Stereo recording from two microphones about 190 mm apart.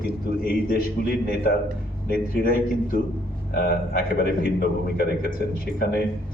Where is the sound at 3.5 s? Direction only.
50° left (ahead or behind).